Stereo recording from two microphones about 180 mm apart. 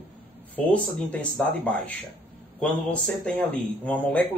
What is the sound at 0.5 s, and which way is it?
Speech, 10° left (ahead or behind).